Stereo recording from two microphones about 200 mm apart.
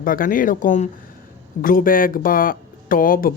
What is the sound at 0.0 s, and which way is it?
Speech, 45° left (ahead or behind).